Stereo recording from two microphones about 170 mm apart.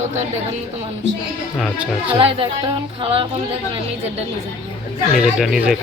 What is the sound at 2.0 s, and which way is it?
Speech, 30° right (ahead or behind).